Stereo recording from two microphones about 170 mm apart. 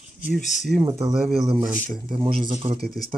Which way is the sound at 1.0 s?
5° right (ahead or behind).